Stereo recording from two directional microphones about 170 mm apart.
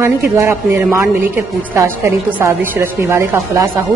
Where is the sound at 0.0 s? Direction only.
15° right (ahead or behind).